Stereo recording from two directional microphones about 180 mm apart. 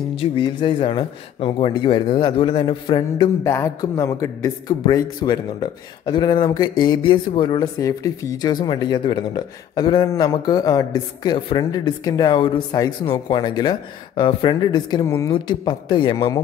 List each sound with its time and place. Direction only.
0.1 s speech: 30° left (ahead or behind)
3.4 s speech: 15° left (ahead or behind)